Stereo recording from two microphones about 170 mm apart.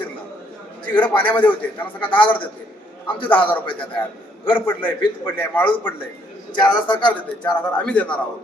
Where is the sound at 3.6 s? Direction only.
30° left (ahead or behind).